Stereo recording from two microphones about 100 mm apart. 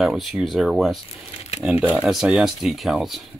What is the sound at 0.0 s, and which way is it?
Speech, centre (ahead or behind).